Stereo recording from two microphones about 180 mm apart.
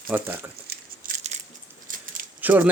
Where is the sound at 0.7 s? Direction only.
45° right (ahead or behind).